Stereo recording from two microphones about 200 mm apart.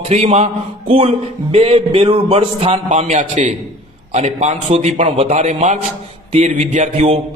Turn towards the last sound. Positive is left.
turn(degrees=-35)  # may be behind; listen again after turning